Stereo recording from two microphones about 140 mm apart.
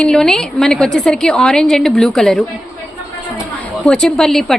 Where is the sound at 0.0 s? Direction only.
5° left (ahead or behind).